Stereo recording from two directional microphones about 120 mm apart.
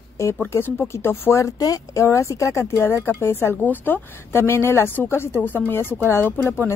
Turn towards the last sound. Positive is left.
turn(degrees=15)  # may be behind; listen again after turning